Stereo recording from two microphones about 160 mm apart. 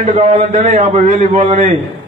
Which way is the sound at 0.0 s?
45° right (ahead or behind).